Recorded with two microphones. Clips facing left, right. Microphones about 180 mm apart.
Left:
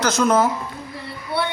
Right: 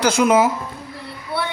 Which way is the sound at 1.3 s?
Centre (ahead or behind).